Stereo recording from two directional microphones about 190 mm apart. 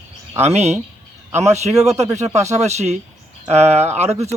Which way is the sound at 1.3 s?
15° right (ahead or behind).